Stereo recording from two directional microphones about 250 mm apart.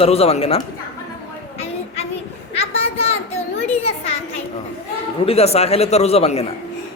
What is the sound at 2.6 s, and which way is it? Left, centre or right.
Children playing, left.